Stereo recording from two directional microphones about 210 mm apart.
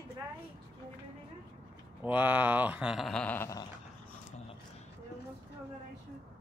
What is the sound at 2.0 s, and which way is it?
Speech, 5° right (ahead or behind).